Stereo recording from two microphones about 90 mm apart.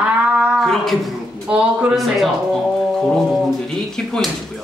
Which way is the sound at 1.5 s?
15° right (ahead or behind).